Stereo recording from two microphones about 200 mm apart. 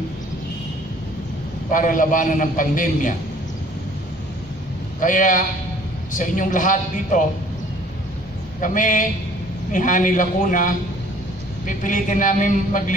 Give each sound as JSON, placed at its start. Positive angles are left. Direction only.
{"t": 1.7, "sound": "a man's voice", "side_deg": 40}
{"t": 5.0, "sound": "a man's voice", "side_deg": 40}
{"t": 8.5, "sound": "a man's voice", "side_deg": 40}